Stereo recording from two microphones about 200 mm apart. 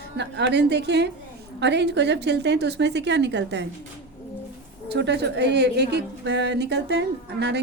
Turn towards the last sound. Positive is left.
turn(degrees=-60)  # may be behind; listen again after turning